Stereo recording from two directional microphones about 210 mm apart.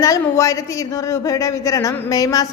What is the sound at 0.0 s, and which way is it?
A woman's voice, 15° left (ahead or behind).